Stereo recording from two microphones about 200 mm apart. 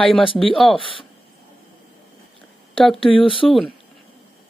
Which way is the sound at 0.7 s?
25° left (ahead or behind).